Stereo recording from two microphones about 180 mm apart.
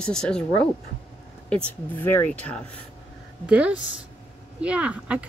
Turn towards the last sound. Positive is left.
turn(degrees=-5)  # may be behind; listen again after turning